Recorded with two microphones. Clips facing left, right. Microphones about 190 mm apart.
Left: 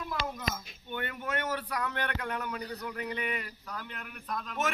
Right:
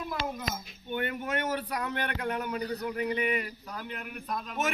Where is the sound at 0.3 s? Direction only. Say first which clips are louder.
Right 1 dB; 15° right (ahead or behind).